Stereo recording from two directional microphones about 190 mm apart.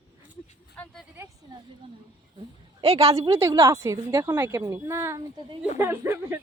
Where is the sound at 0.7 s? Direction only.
5° left (ahead or behind).